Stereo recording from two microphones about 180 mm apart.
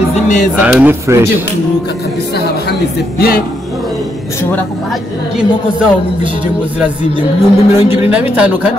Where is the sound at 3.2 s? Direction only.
55° left (ahead or behind).